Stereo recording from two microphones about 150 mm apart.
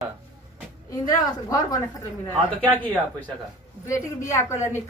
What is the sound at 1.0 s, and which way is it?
Speech, 25° left (ahead or behind).